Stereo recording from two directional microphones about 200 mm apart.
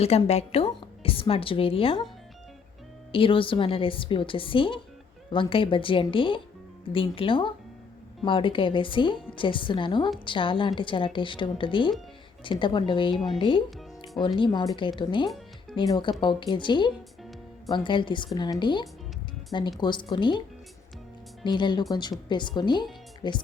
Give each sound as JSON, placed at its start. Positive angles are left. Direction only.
{"t": 0.0, "sound": "a woman's voice", "side_deg": 30}
{"t": 3.1, "sound": "a woman's voice", "side_deg": 25}
{"t": 21.4, "sound": "a woman's voice", "side_deg": 20}